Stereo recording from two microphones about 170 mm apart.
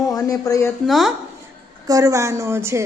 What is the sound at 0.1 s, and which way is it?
Speech, 20° left (ahead or behind).